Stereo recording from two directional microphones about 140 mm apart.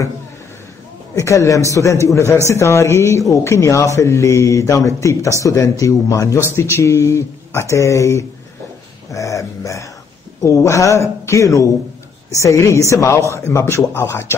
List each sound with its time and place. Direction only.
1.1 s a woman's voice: 20° left (ahead or behind)
9.1 s a sound: 25° left (ahead or behind)
10.4 s speech: 20° left (ahead or behind)